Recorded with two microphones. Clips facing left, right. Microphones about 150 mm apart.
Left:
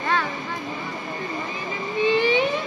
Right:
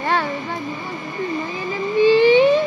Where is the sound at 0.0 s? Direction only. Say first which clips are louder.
Right 3 dB; 30° right (ahead or behind).